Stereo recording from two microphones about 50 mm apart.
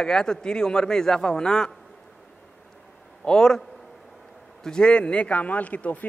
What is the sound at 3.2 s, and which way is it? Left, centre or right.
Speech, centre.